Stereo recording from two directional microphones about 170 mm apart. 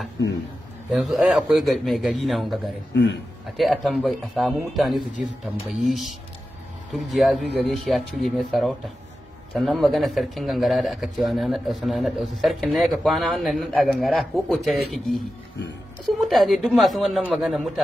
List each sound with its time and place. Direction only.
0.9 s a man's voice: 5° right (ahead or behind)
2.9 s a man's voice: 90° left
3.5 s a man's voice: centre (ahead or behind)